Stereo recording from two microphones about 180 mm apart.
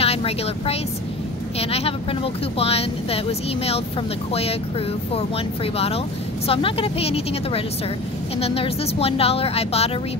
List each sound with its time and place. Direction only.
0.0 s speech: 35° left (ahead or behind)